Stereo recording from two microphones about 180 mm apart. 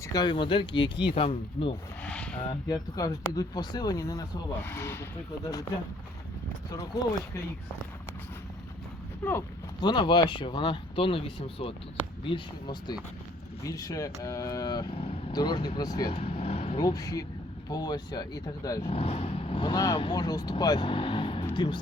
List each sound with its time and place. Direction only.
0.1 s speech: 25° left (ahead or behind)
2.0 s a sound: 5° left (ahead or behind)
2.6 s speech: 20° left (ahead or behind)
6.9 s speech: 20° left (ahead or behind)
9.2 s speech: 10° left (ahead or behind)
9.8 s speech: 25° left (ahead or behind)
16.2 s vehicle: 35° left (ahead or behind)
16.8 s speech: 20° left (ahead or behind)
18.8 s speech: 30° left (ahead or behind)